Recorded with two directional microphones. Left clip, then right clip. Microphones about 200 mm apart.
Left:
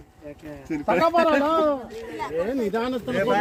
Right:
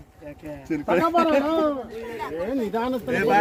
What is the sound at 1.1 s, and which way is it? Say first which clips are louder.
Speech: left 1 dB; 20° left (ahead or behind).